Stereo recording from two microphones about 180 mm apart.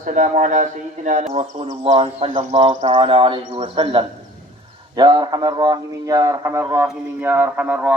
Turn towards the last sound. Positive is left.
turn(degrees=-5)  # may be behind; listen again after turning